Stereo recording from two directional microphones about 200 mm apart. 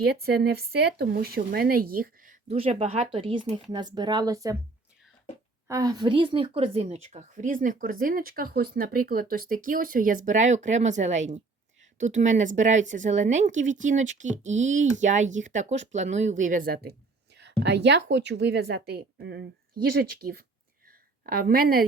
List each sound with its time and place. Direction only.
0.0 s speech: 50° right (ahead or behind)
2.5 s speech: 30° right (ahead or behind)
5.6 s a woman's voice: 15° right (ahead or behind); by 21.8 s 50° right (ahead or behind)